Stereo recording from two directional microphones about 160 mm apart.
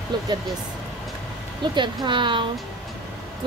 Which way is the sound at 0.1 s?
25° right (ahead or behind).